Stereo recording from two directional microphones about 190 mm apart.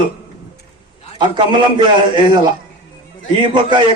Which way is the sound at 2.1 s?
25° right (ahead or behind).